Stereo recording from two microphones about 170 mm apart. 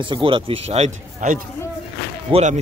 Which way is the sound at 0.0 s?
30° right (ahead or behind).